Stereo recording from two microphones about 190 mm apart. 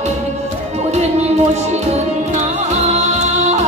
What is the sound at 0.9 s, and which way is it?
Music, 35° right (ahead or behind).